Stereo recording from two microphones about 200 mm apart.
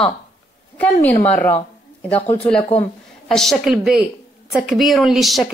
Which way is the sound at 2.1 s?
35° left (ahead or behind).